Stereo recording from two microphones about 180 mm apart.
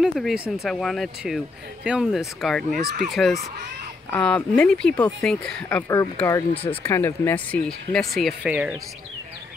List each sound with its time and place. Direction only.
0.0 s speech: centre (ahead or behind)
6.5 s speech: 30° left (ahead or behind)
6.8 s speech: 15° left (ahead or behind); by 8.7 s 5° right (ahead or behind)